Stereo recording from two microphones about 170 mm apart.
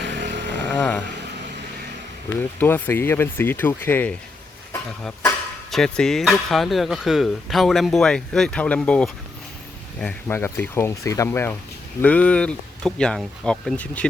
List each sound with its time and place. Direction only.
0.0 s vehicle: 90° right
0.7 s speech: 5° left (ahead or behind)
2.6 s speech: 10° left (ahead or behind)
5.7 s speech: 5° left (ahead or behind)